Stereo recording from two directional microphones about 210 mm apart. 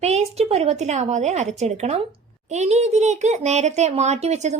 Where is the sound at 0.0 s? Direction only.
30° right (ahead or behind).